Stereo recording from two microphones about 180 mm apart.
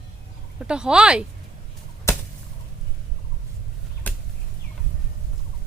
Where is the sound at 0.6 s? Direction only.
5° right (ahead or behind).